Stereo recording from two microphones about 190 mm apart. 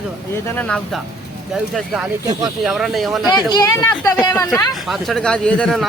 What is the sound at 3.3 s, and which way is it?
Speech, 20° left (ahead or behind).